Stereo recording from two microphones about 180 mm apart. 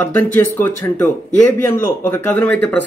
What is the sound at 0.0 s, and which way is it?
A man's voice, 10° left (ahead or behind).